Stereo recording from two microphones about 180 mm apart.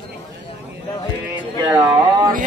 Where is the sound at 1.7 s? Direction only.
20° right (ahead or behind).